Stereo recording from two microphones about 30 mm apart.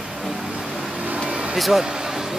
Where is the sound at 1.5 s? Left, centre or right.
Centre.